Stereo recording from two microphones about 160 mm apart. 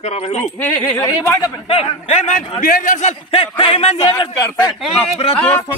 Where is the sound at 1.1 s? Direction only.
20° left (ahead or behind).